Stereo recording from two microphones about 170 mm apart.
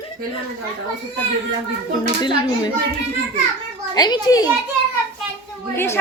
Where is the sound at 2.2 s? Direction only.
25° left (ahead or behind).